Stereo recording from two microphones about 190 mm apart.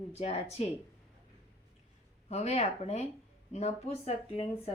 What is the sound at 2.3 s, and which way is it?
A woman's voice, 35° left (ahead or behind).